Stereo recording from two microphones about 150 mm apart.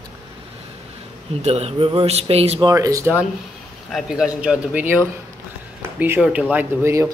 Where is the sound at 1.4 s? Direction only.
45° right (ahead or behind).